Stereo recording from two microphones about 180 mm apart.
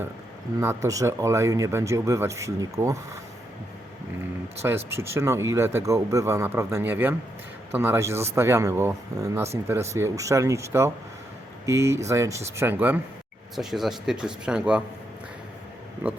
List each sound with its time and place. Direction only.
0.6 s speech: 15° right (ahead or behind)
4.9 s speech: 15° right (ahead or behind)